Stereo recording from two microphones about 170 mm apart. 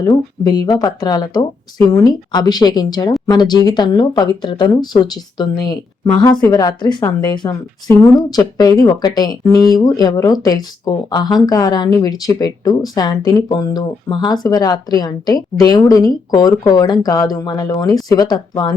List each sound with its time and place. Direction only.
0.1 s speech: 20° left (ahead or behind)